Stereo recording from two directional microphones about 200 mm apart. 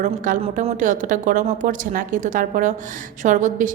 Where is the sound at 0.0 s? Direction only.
35° right (ahead or behind).